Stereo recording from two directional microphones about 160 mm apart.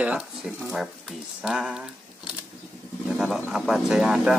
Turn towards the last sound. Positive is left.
turn(degrees=-5)  # may be behind; listen again after turning